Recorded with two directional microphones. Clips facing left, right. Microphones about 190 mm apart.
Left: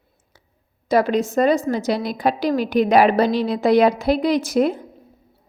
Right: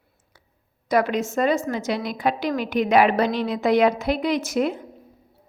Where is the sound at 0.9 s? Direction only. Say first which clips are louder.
Left 3 dB; 30° left (ahead or behind).